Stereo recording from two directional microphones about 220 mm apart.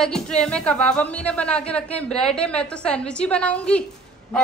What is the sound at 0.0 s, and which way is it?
A woman's voice, 5° left (ahead or behind).